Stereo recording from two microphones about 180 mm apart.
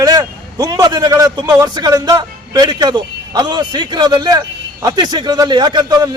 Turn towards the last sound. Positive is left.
turn(degrees=-20)  # may be behind; listen again after turning